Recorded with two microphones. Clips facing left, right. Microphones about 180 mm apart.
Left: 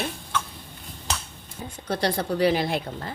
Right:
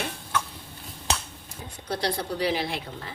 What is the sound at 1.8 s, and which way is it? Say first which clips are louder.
Speech: left 3 dB; 50° left (ahead or behind).